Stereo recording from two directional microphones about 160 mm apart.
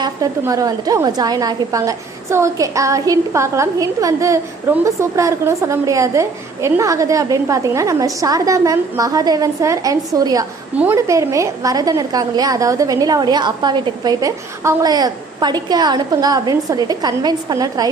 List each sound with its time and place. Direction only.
0.0 s a woman's voice: 20° right (ahead or behind)